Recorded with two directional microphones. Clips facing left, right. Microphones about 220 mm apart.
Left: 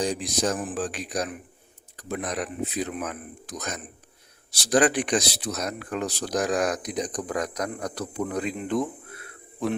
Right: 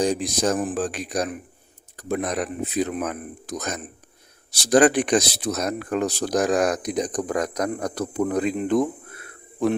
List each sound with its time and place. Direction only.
0.0 s speech: 45° right (ahead or behind)